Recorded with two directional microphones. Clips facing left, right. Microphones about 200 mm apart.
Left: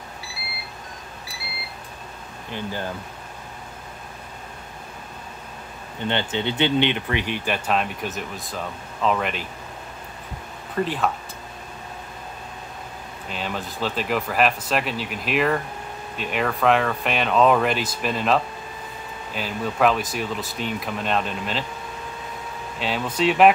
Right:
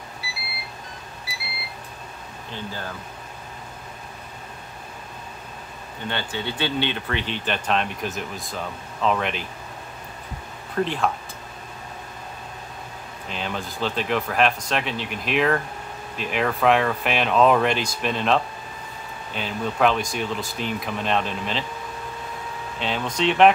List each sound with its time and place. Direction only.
2.5 s speech: 15° left (ahead or behind)
6.0 s speech: 20° left (ahead or behind); by 9.5 s centre (ahead or behind)
10.7 s speech: centre (ahead or behind)
13.3 s speech: centre (ahead or behind)
22.8 s speech: 5° left (ahead or behind)